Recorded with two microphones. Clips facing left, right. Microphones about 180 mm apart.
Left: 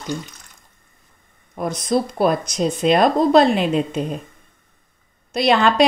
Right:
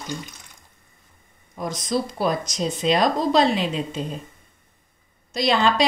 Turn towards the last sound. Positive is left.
turn(degrees=60)  # may be behind; listen again after turning